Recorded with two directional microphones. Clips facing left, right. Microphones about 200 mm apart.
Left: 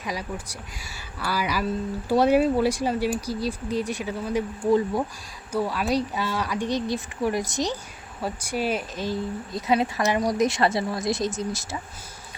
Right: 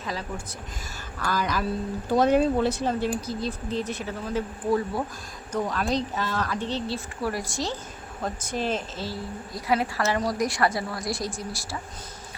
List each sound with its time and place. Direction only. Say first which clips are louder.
0.0 s a woman's voice: left 1 dB; 15° left (ahead or behind)